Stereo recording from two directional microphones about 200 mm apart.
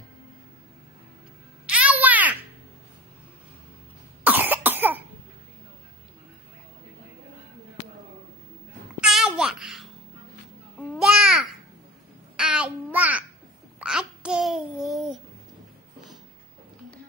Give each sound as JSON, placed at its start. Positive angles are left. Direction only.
{"t": 1.7, "sound": "a sound", "side_deg": -5}
{"t": 4.2, "sound": "cough", "side_deg": -10}
{"t": 9.0, "sound": "babbling", "side_deg": -5}